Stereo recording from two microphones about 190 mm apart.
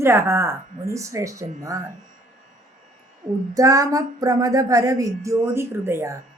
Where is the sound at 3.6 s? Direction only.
15° right (ahead or behind).